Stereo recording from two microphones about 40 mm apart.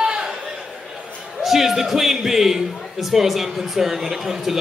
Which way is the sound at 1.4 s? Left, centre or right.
Centre.